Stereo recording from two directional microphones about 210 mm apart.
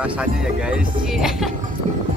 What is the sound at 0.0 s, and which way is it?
Speech, 5° right (ahead or behind).